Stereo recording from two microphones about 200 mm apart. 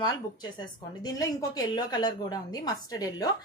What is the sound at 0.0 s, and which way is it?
A woman's voice, 20° left (ahead or behind).